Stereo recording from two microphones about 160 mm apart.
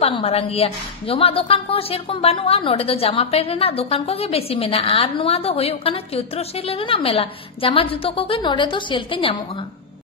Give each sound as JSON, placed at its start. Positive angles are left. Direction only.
{"t": 0.0, "sound": "a woman's voice", "side_deg": 40}